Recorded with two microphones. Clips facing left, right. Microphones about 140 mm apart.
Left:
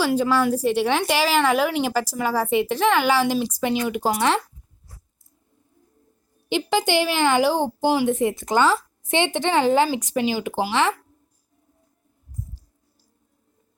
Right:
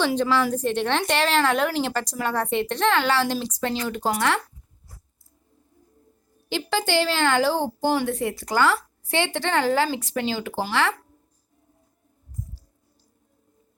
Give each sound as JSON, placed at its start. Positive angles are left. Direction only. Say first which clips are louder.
{"t": 0.0, "sound": "a woman's voice", "louder": "left 2 dB", "side_deg": 10}
{"t": 6.5, "sound": "a woman's voice", "louder": "left 3 dB", "side_deg": 15}